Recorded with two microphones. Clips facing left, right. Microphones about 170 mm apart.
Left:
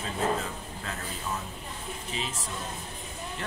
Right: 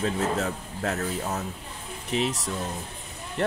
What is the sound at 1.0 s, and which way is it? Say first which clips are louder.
Speech: right 6 dB; 45° right (ahead or behind).